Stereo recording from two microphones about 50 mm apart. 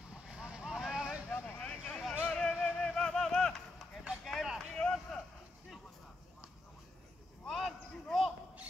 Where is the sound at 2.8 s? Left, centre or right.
Centre.